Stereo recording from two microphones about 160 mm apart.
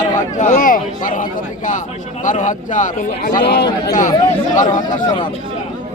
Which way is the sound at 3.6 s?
25° left (ahead or behind).